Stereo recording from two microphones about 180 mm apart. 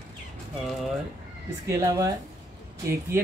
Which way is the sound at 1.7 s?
15° right (ahead or behind).